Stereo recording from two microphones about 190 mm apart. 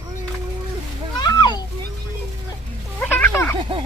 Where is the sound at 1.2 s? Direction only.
20° left (ahead or behind).